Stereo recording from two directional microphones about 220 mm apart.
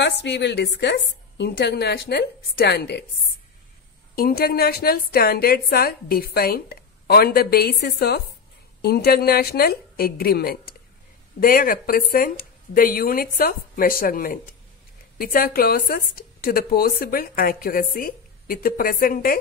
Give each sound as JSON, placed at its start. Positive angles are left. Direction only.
{"t": 0.2, "sound": "a woman's voice", "side_deg": 50}
{"t": 4.1, "sound": "a woman's voice", "side_deg": 45}